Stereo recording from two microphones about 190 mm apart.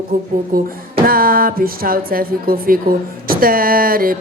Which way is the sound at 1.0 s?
50° right (ahead or behind).